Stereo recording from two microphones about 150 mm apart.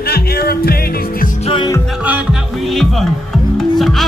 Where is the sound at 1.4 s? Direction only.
35° left (ahead or behind).